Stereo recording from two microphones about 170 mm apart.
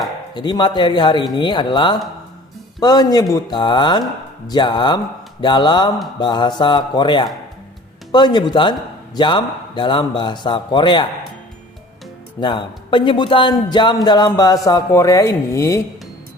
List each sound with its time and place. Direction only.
0.3 s a man's voice: 25° left (ahead or behind)
12.4 s a man's voice: 30° left (ahead or behind)